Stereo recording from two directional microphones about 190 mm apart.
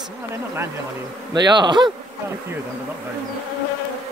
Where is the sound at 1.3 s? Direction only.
25° right (ahead or behind).